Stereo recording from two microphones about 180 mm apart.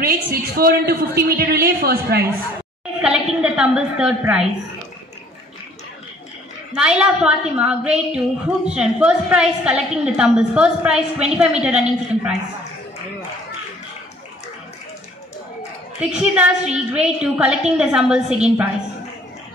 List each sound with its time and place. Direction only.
0.6 s a woman's voice: 55° right (ahead or behind)
3.0 s a woman's voice: 5° right (ahead or behind)
6.7 s a woman's voice: 5° right (ahead or behind)
16.0 s a woman's voice: 5° right (ahead or behind)